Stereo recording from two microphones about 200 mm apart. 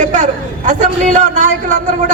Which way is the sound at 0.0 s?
40° right (ahead or behind).